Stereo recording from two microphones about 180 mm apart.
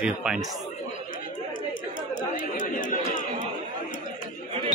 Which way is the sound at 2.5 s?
45° left (ahead or behind).